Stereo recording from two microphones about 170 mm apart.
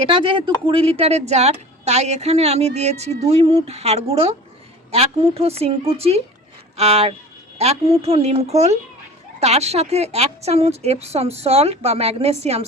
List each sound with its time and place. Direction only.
0.0 s a woman's voice: 30° right (ahead or behind)